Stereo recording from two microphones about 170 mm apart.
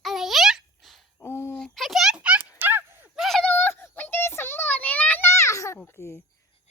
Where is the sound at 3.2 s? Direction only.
Centre (ahead or behind).